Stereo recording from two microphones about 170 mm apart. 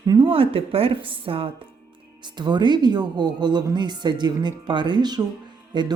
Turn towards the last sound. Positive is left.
turn(degrees=-25)  # may be behind; listen again after turning